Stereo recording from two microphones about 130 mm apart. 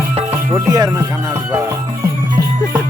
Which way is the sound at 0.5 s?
25° right (ahead or behind).